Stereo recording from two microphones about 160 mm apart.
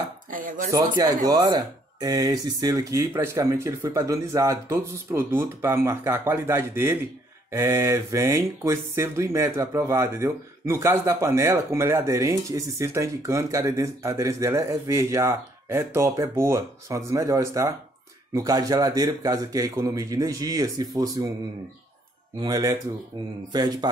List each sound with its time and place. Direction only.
0.3 s speech: 55° right (ahead or behind)
0.7 s speech: 25° right (ahead or behind)
22.4 s speech: 25° right (ahead or behind)